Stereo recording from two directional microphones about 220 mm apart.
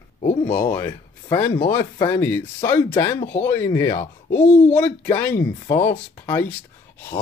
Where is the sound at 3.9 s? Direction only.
35° left (ahead or behind).